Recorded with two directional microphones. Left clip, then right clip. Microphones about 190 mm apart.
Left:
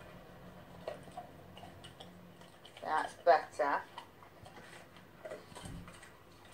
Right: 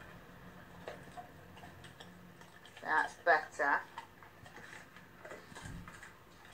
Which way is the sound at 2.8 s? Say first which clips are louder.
Left 1 dB; 20° right (ahead or behind).